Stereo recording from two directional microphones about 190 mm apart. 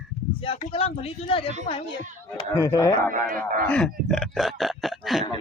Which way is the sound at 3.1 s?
45° right (ahead or behind).